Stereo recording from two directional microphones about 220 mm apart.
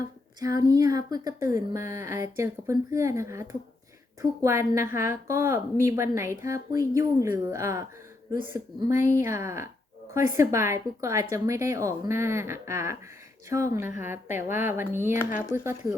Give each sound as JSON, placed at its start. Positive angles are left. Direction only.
{"t": 0.3, "sound": "a woman's voice", "side_deg": -15}